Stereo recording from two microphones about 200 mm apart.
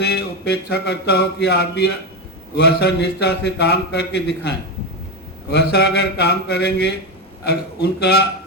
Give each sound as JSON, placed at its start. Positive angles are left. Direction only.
{"t": 0.0, "sound": "a man's voice", "side_deg": 55}